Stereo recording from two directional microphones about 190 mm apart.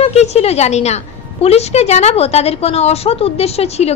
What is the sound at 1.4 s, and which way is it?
A woman's voice, 35° left (ahead or behind).